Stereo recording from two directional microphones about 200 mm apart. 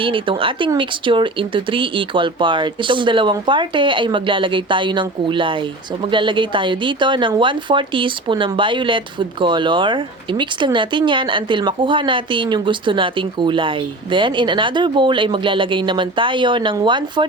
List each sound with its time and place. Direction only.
0.0 s speech: 25° right (ahead or behind)